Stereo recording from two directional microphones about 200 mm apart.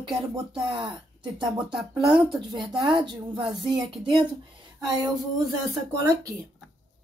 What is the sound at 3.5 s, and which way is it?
Speech, centre (ahead or behind).